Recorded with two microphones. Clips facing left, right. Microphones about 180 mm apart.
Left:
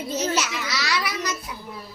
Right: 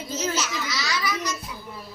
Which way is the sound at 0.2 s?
65° left (ahead or behind).